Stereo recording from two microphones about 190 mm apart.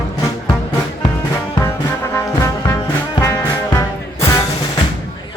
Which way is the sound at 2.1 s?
15° left (ahead or behind).